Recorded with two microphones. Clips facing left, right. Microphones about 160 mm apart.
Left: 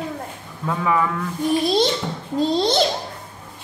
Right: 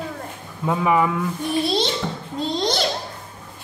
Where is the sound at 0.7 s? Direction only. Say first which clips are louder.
Right 2 dB; 20° right (ahead or behind).